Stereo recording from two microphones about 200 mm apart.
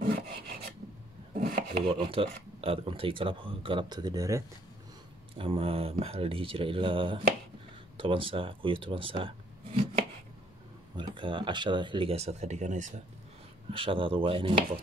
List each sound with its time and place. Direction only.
1.4 s chopping: 45° right (ahead or behind)
1.9 s speech: 25° right (ahead or behind)
5.4 s speech: 25° right (ahead or behind)
11.0 s speech: 25° right (ahead or behind)
13.7 s speech: 25° right (ahead or behind)